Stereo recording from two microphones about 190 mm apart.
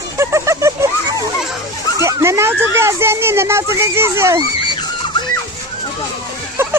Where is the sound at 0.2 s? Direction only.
15° right (ahead or behind).